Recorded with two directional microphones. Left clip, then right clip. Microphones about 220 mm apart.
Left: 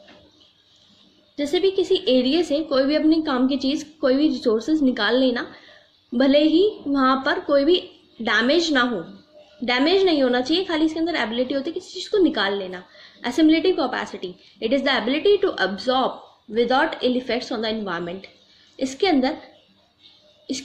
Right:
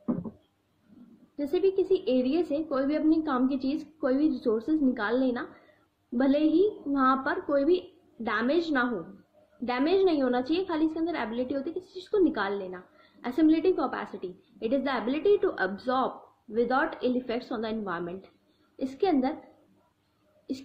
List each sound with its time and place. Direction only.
1.3 s a woman's voice: 5° left (ahead or behind)